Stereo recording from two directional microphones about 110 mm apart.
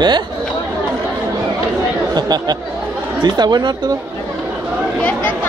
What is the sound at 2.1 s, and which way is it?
Speech, 40° right (ahead or behind).